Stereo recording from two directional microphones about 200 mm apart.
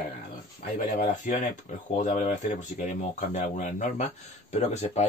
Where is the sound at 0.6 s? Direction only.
40° left (ahead or behind).